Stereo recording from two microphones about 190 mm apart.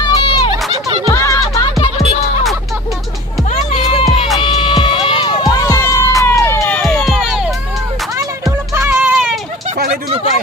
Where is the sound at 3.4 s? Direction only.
30° left (ahead or behind); by 7.5 s centre (ahead or behind).